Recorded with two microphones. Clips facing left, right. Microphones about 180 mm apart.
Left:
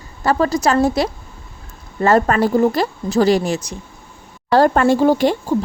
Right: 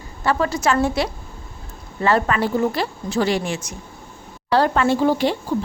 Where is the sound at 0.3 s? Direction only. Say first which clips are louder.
Left 4 dB; 40° left (ahead or behind).